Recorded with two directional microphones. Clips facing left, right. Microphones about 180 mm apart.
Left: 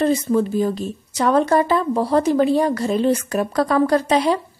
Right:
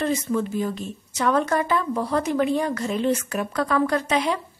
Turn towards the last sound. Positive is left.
turn(degrees=35)  # may be behind; listen again after turning